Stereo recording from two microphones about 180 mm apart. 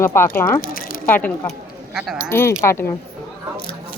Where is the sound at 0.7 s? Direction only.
55° left (ahead or behind).